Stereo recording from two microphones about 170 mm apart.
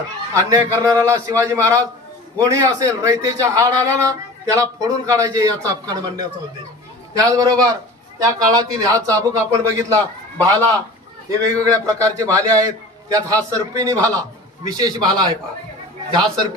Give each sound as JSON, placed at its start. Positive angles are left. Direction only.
{"t": 0.3, "sound": "a man's voice", "side_deg": -20}